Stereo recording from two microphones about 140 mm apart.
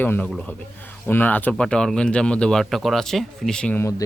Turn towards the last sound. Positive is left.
turn(degrees=25)  # may be behind; listen again after turning